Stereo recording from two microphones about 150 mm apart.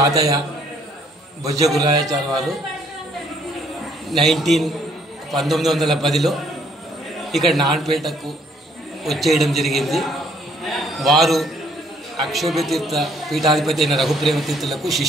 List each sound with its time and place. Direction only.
1.4 s a man's voice: 25° right (ahead or behind)
4.1 s a man's voice: centre (ahead or behind)